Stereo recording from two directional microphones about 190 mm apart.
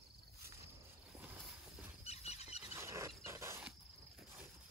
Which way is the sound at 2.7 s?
15° right (ahead or behind).